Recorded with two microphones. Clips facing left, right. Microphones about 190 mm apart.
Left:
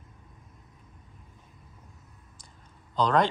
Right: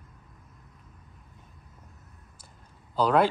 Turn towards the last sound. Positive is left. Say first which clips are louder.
# right 2 dB
turn(degrees=-5)  # may be behind; listen again after turning